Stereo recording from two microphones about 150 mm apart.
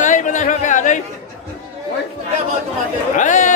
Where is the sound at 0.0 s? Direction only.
60° left (ahead or behind).